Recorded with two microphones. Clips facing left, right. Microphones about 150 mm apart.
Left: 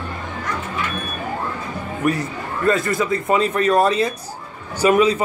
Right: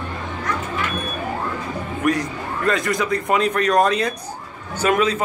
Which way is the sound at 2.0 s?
5° left (ahead or behind).